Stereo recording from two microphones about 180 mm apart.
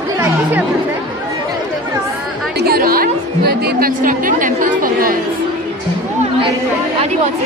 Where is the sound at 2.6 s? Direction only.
55° right (ahead or behind).